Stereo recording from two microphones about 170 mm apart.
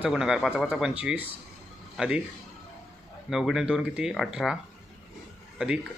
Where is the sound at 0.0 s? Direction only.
5° right (ahead or behind).